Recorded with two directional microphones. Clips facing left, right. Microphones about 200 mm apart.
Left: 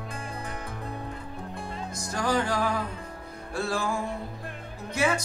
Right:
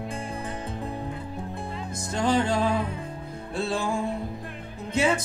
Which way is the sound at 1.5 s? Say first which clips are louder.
Right 2 dB; 20° right (ahead or behind).